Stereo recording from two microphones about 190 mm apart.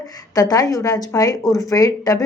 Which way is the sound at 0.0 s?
20° left (ahead or behind).